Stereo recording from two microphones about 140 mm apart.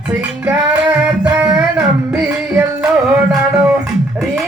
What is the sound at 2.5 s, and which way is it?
Music, 5° right (ahead or behind).